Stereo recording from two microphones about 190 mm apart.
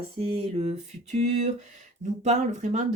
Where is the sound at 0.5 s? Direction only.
35° right (ahead or behind).